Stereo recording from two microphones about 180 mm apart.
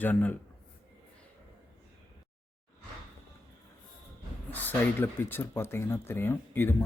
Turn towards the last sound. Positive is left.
turn(degrees=10)  # may be behind; listen again after turning